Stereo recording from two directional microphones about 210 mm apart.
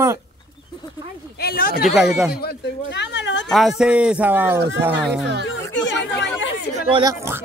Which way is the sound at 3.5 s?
Centre (ahead or behind).